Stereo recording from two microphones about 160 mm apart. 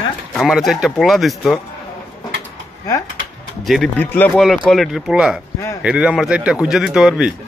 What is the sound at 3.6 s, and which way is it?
Speech, centre (ahead or behind).